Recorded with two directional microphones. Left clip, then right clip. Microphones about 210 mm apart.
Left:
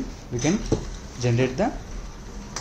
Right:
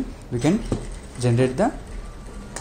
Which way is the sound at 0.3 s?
25° right (ahead or behind).